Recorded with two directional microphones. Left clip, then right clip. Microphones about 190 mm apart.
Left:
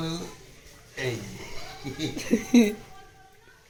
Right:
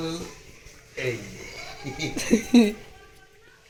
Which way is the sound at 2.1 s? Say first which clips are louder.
Right 2 dB; 15° right (ahead or behind).